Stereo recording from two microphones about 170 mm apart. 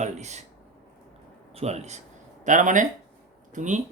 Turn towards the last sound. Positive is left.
turn(degrees=-45)  # may be behind; listen again after turning